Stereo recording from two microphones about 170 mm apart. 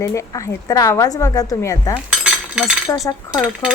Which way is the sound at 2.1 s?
5° right (ahead or behind).